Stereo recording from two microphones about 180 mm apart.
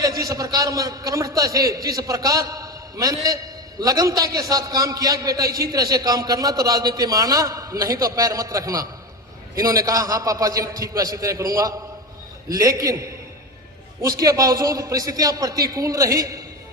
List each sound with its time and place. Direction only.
0.2 s a man's voice: 20° right (ahead or behind)
14.2 s a man's voice: 20° right (ahead or behind)